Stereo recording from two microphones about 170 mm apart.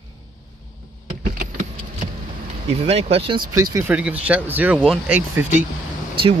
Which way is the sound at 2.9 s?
35° right (ahead or behind).